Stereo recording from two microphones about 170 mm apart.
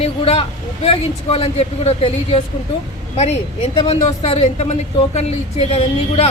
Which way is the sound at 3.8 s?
40° left (ahead or behind).